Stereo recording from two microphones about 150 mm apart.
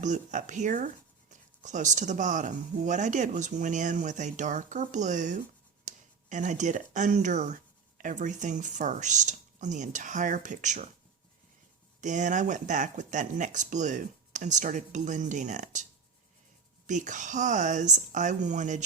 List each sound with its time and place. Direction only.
0.0 s speech: 55° right (ahead or behind)
11.9 s speech: 55° right (ahead or behind)